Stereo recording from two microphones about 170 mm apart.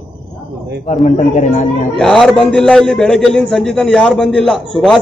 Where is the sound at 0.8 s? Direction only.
45° left (ahead or behind).